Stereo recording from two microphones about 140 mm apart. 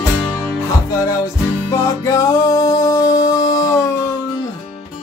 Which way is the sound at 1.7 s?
20° left (ahead or behind).